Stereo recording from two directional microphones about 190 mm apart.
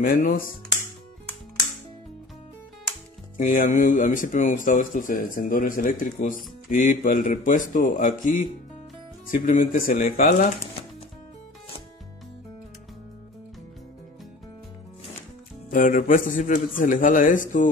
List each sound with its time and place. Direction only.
0.0 s speech: 50° left (ahead or behind)
3.3 s speech: 45° left (ahead or behind)
15.7 s speech: 45° left (ahead or behind)